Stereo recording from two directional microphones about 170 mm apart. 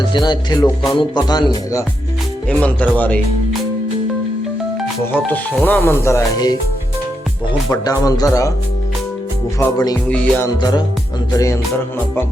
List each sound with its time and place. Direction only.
0.1 s speech: 25° left (ahead or behind)
2.5 s speech: 10° left (ahead or behind)
5.1 s speech: 10° left (ahead or behind)
7.7 s speech: 20° left (ahead or behind)
9.6 s speech: 15° left (ahead or behind)
10.6 s speech: 25° left (ahead or behind)